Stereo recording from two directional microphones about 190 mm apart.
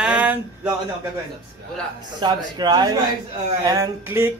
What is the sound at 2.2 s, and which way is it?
A man's voice, 25° right (ahead or behind).